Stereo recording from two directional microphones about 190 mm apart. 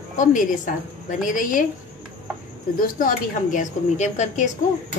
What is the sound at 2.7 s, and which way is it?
A woman's voice, 45° left (ahead or behind).